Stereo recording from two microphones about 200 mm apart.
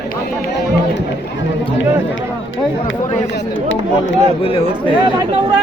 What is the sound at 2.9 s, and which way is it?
Speech, 65° left (ahead or behind).